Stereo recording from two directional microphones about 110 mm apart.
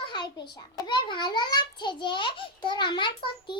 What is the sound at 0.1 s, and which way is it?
A child's voice, 45° left (ahead or behind).